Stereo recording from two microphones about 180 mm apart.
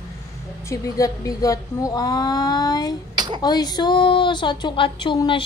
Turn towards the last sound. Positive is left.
turn(degrees=25)  # may be behind; listen again after turning